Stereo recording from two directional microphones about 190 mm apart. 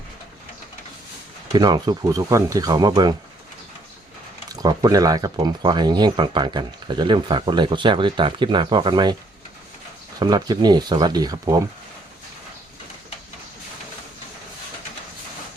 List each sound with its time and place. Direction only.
1.5 s speech: 20° right (ahead or behind)
4.4 s speech: 20° right (ahead or behind)
10.2 s speech: 20° right (ahead or behind)